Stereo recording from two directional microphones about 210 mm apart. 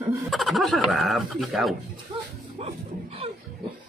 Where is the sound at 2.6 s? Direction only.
30° right (ahead or behind).